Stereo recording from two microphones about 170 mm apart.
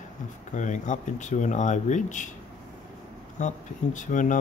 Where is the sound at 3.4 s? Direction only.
45° left (ahead or behind).